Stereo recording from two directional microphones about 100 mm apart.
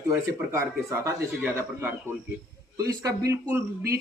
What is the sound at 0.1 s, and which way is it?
Speech, 25° right (ahead or behind).